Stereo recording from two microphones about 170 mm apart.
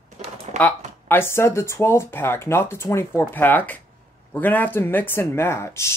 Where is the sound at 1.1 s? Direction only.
15° left (ahead or behind).